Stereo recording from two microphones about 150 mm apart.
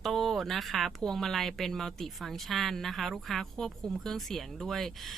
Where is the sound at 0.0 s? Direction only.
Centre (ahead or behind).